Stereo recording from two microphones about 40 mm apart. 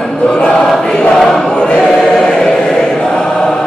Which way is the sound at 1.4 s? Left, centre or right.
Left.